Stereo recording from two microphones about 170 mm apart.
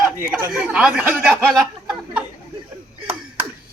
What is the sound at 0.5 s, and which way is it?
A man's voice, 5° right (ahead or behind).